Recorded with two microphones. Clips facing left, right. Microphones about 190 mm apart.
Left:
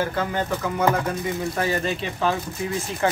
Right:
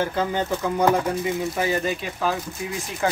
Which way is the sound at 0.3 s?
15° right (ahead or behind).